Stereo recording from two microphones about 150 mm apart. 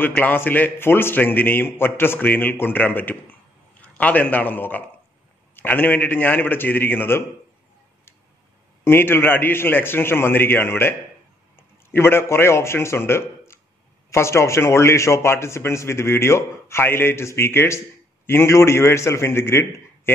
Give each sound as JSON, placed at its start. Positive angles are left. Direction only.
{"t": 0.0, "sound": "a man's voice", "side_deg": 10}
{"t": 8.8, "sound": "a man's voice", "side_deg": 15}